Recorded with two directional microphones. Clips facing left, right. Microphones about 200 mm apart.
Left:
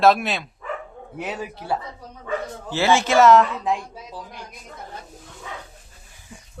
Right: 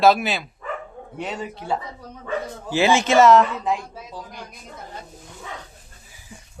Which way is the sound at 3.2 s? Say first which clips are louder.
Even; centre (ahead or behind).